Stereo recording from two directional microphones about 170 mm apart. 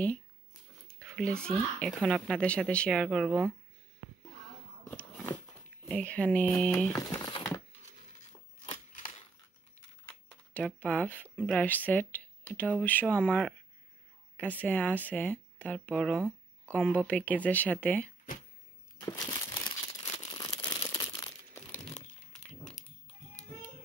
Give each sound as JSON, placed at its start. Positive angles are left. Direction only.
{"t": 0.8, "sound": "speech", "side_deg": 0}
{"t": 5.9, "sound": "speech", "side_deg": 5}
{"t": 7.0, "sound": "crumpling", "side_deg": 20}
{"t": 10.0, "sound": "a sound", "side_deg": 10}
{"t": 11.4, "sound": "speech", "side_deg": 10}
{"t": 18.9, "sound": "crumpling", "side_deg": 20}